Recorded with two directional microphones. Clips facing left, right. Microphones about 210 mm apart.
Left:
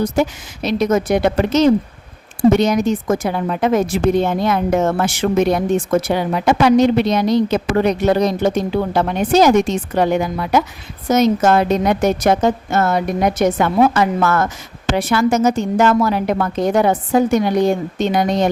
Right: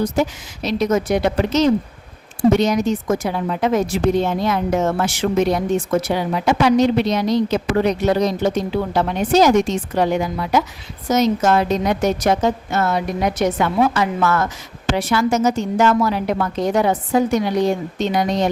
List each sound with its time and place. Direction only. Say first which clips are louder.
0.2 s a woman's voice: left 2 dB; 55° left (ahead or behind)